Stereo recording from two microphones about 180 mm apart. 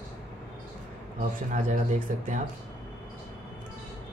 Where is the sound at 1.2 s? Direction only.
45° right (ahead or behind).